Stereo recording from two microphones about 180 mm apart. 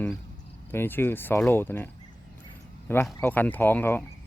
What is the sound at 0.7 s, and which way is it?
Speech, 10° left (ahead or behind).